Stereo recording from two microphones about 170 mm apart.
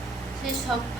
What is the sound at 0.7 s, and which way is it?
Speech, centre (ahead or behind).